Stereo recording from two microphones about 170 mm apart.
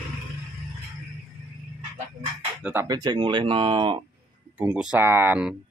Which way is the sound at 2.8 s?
25° right (ahead or behind).